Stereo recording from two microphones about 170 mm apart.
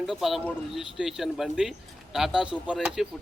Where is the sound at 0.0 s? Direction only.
Centre (ahead or behind).